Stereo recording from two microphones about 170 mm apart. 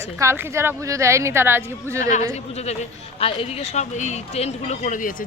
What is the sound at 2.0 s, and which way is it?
Speech, 45° left (ahead or behind).